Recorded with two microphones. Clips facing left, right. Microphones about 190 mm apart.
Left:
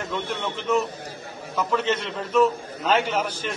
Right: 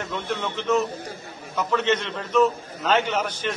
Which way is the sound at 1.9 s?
5° left (ahead or behind).